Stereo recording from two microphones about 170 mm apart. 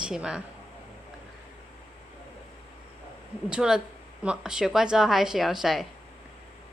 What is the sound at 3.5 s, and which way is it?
A woman's voice, 5° right (ahead or behind).